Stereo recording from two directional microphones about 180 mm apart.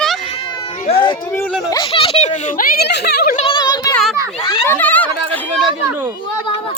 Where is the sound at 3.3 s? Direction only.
30° left (ahead or behind).